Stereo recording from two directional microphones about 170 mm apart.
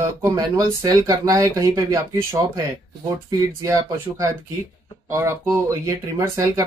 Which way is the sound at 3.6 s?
20° right (ahead or behind).